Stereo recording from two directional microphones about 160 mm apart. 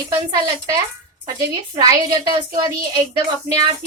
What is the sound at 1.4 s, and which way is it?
A woman's voice, 20° right (ahead or behind).